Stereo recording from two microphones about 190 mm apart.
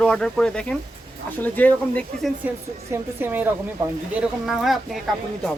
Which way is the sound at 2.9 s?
10° right (ahead or behind).